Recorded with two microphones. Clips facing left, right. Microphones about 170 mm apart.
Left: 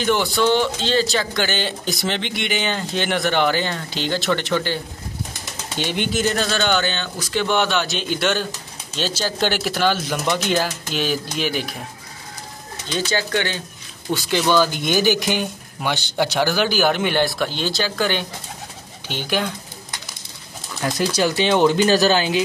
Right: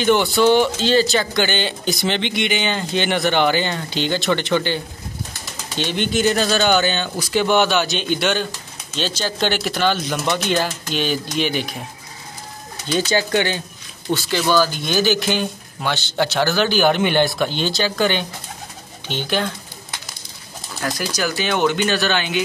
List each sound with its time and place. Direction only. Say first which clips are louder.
0.0 s speech: right 3 dB; centre (ahead or behind)
5.8 s speech: right 2 dB; 10° left (ahead or behind)
6.2 s speech: right 5 dB; 5° right (ahead or behind)
12.9 s speech: right 4 dB; 15° right (ahead or behind)
14.1 s speech: even; 20° left (ahead or behind)
20.8 s speech: left 3 dB; 25° left (ahead or behind)